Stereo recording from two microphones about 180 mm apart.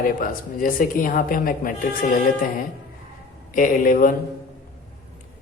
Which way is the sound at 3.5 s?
50° left (ahead or behind).